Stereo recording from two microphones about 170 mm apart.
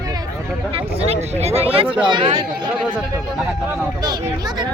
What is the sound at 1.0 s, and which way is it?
Speech, 35° right (ahead or behind).